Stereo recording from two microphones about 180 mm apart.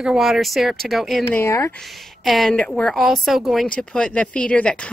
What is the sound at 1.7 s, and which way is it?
A woman's voice, centre (ahead or behind).